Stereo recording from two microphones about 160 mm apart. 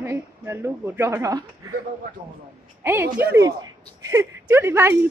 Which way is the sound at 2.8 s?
15° right (ahead or behind).